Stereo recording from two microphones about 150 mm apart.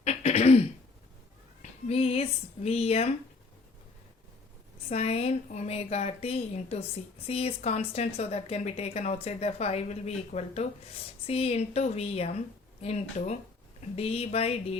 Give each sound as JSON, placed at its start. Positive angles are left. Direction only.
{"t": 0.0, "sound": "throat clearing", "side_deg": 45}
{"t": 1.9, "sound": "a sound", "side_deg": 40}
{"t": 4.9, "sound": "speech", "side_deg": 45}